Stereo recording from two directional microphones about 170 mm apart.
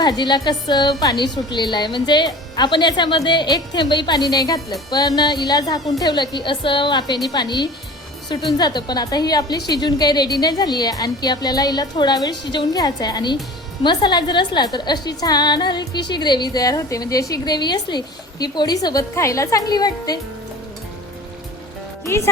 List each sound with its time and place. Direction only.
0.0 s a woman's voice: 25° left (ahead or behind)